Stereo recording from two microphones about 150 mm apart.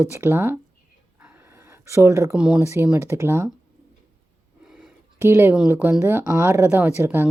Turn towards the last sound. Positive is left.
turn(degrees=-15)  # may be behind; listen again after turning